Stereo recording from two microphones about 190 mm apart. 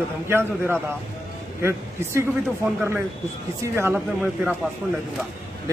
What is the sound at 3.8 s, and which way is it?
Speech, 10° right (ahead or behind).